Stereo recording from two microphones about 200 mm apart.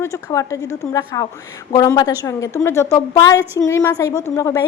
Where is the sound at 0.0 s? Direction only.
15° left (ahead or behind).